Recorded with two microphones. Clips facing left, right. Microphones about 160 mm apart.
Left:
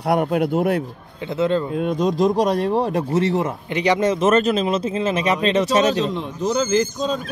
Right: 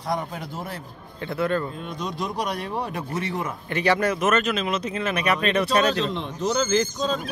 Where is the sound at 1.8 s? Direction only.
50° left (ahead or behind).